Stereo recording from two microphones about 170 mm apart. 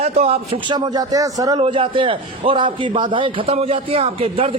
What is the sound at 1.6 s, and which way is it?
A man's voice, 30° right (ahead or behind).